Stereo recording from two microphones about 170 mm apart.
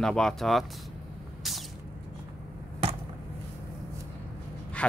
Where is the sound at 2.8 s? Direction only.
35° right (ahead or behind).